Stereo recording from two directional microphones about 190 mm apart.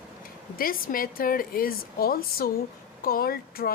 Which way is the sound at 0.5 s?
50° left (ahead or behind).